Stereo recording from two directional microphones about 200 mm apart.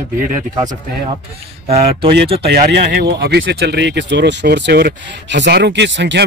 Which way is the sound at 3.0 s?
55° right (ahead or behind).